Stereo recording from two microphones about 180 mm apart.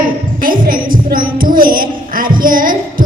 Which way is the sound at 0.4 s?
50° right (ahead or behind).